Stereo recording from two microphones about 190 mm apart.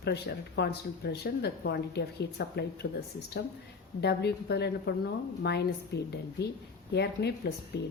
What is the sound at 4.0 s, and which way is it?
A woman's voice, 60° left (ahead or behind).